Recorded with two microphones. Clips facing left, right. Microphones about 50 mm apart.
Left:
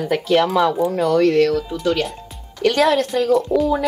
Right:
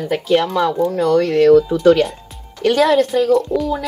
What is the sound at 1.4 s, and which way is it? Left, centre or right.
Speech, centre.